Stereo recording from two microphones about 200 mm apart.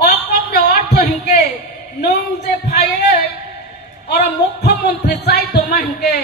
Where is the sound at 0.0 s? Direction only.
50° left (ahead or behind).